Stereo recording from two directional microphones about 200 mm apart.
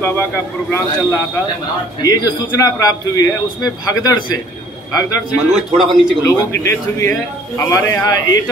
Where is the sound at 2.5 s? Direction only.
15° left (ahead or behind).